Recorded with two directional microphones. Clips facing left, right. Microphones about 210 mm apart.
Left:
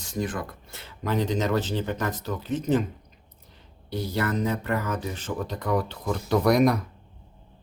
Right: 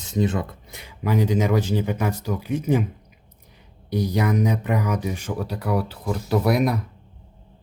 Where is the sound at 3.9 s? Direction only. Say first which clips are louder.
Right 5 dB; 15° right (ahead or behind).